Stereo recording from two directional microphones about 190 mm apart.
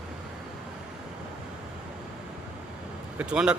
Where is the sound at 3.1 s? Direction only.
5° right (ahead or behind).